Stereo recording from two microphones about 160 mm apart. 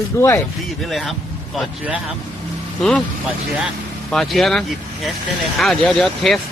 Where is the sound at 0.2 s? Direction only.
20° left (ahead or behind).